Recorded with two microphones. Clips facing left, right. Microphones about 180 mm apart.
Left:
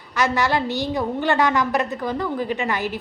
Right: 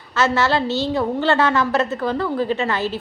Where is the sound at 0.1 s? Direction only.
15° left (ahead or behind).